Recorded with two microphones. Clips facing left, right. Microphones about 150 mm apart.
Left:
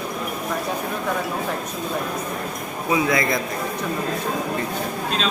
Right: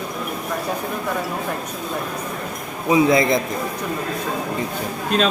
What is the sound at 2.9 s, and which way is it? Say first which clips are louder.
Speech: right 5 dB; 25° right (ahead or behind).